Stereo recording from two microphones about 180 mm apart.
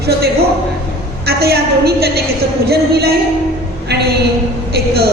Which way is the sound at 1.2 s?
60° right (ahead or behind).